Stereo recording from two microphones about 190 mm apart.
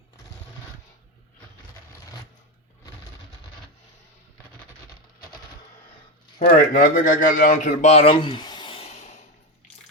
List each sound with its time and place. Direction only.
6.5 s a man's voice: 45° left (ahead or behind)